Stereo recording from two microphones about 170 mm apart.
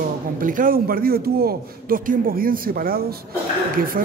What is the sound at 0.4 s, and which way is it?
A man's voice, 55° right (ahead or behind).